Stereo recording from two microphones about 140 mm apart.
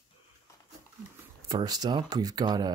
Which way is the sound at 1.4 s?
30° right (ahead or behind).